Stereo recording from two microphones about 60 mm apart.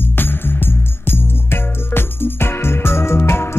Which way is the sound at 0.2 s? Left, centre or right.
Left.